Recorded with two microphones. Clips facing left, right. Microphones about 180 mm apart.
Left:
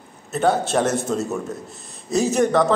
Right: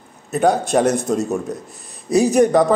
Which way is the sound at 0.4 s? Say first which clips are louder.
Right 3 dB; 15° right (ahead or behind).